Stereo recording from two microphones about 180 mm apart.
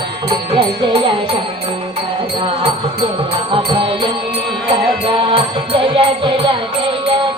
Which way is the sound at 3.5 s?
30° right (ahead or behind).